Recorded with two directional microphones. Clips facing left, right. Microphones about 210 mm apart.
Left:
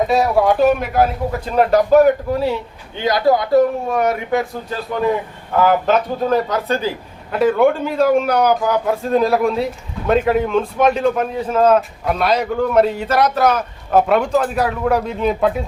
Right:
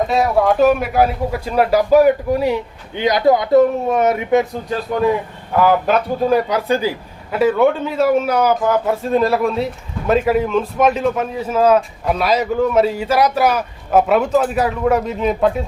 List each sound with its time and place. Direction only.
0.0 s a man's voice: centre (ahead or behind); by 4.4 s 20° right (ahead or behind)
5.6 s a man's voice: 10° right (ahead or behind)